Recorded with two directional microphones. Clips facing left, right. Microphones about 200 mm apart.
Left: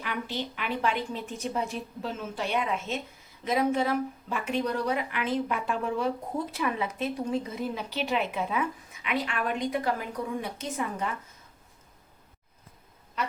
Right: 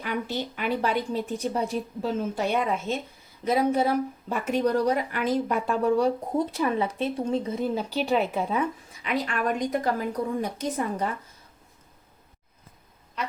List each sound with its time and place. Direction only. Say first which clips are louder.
0.0 s speech: right 4 dB; 45° right (ahead or behind)